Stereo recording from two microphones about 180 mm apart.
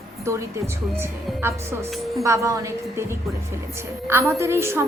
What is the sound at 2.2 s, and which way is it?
Speech, 15° right (ahead or behind).